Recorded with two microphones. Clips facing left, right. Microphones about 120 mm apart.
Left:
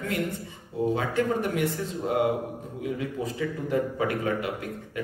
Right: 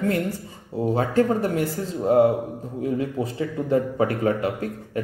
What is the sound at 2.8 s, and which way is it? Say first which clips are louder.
A man's voice: right 5 dB; 35° right (ahead or behind).